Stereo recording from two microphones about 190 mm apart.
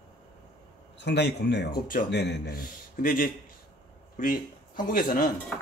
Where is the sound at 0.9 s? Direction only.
65° left (ahead or behind); by 5.0 s 45° left (ahead or behind).